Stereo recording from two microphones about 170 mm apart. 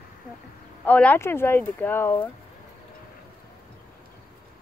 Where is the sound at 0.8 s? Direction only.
10° left (ahead or behind).